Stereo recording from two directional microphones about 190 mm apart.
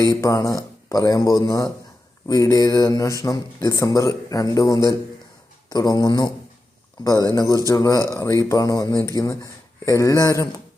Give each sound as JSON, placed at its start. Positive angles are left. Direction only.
{"t": 0.2, "sound": "speech", "side_deg": 15}